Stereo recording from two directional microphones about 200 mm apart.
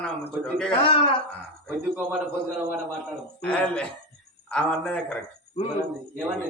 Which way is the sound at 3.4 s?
5° left (ahead or behind).